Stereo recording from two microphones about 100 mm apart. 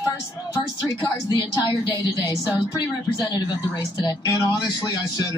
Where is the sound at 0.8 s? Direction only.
45° left (ahead or behind).